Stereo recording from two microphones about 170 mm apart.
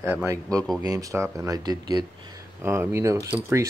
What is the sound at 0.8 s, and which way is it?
Speech, 20° right (ahead or behind).